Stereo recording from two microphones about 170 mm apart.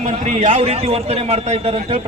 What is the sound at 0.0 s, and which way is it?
A man's voice, 40° right (ahead or behind).